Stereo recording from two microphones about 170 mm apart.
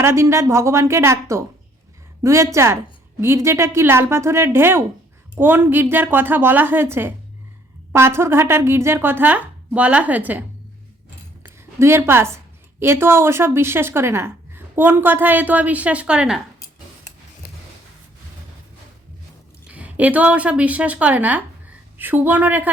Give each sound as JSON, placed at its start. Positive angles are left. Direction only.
{"t": 0.0, "sound": "a woman's voice", "side_deg": -15}
{"t": 11.4, "sound": "a woman's voice", "side_deg": -15}
{"t": 17.4, "sound": "a sound", "side_deg": 55}
{"t": 19.6, "sound": "a woman's voice", "side_deg": -10}